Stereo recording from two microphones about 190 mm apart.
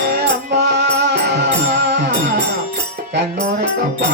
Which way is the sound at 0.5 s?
65° right (ahead or behind).